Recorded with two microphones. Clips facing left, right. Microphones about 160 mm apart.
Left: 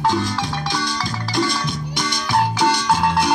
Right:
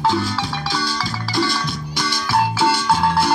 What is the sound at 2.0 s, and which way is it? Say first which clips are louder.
Music: right 1 dB; 20° left (ahead or behind).